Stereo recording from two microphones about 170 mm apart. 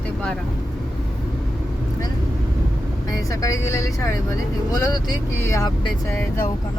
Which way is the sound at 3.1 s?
20° left (ahead or behind).